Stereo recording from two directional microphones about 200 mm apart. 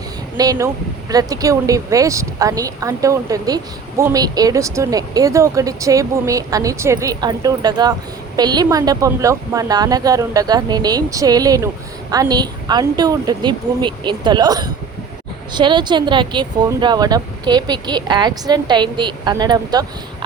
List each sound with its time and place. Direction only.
0.3 s speech: 20° right (ahead or behind)